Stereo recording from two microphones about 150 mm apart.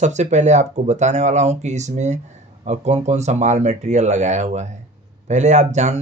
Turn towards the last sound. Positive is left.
turn(degrees=-50)  # may be behind; listen again after turning